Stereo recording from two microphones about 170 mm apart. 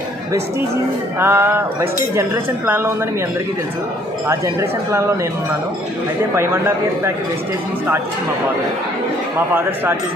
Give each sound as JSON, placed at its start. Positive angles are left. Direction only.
{"t": 1.2, "sound": "speech", "side_deg": -15}
{"t": 4.3, "sound": "speech", "side_deg": -15}
{"t": 6.3, "sound": "speech", "side_deg": -15}
{"t": 9.5, "sound": "speech", "side_deg": -15}